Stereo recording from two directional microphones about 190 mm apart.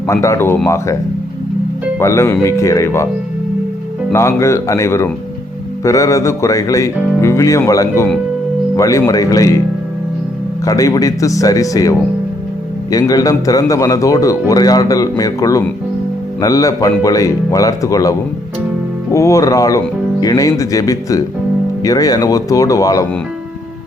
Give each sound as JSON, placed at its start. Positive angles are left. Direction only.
{"t": 0.1, "sound": "speech", "side_deg": 15}
{"t": 2.0, "sound": "speech", "side_deg": 15}
{"t": 4.1, "sound": "speech", "side_deg": 15}
{"t": 10.7, "sound": "speech", "side_deg": 20}
{"t": 19.1, "sound": "speech", "side_deg": 15}